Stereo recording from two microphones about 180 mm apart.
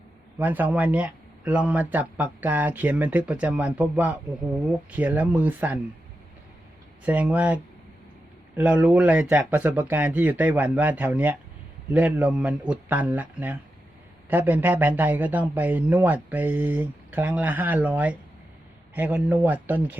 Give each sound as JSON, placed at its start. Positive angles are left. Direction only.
{"t": 0.3, "sound": "a man's voice", "side_deg": -10}
{"t": 7.0, "sound": "a man's voice", "side_deg": -10}